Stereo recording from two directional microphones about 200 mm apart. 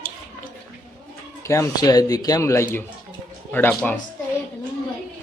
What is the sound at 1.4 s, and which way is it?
Speech, 15° left (ahead or behind).